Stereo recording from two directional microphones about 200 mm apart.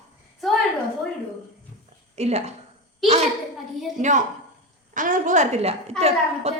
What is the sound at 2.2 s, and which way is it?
Speech, 35° right (ahead or behind).